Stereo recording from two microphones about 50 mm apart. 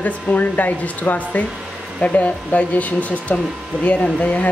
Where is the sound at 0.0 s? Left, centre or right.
Left.